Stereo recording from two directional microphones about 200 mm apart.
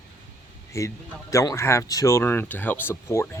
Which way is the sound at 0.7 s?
15° left (ahead or behind).